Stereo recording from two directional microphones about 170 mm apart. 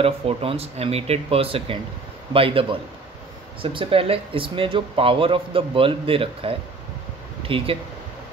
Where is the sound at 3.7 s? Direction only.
35° right (ahead or behind).